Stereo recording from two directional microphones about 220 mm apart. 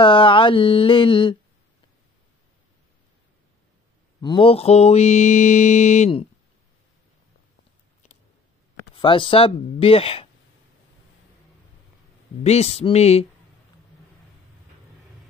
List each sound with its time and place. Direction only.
0.0 s a sound: 25° left (ahead or behind)
4.2 s mantra: 20° left (ahead or behind)
8.9 s speech: 20° left (ahead or behind)
12.4 s speech: 30° left (ahead or behind)